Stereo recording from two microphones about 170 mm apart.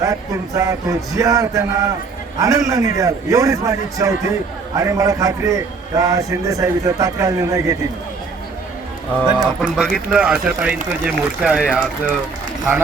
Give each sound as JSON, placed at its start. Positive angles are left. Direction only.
{"t": 0.0, "sound": "a man's voice", "side_deg": -20}
{"t": 9.3, "sound": "speech", "side_deg": 0}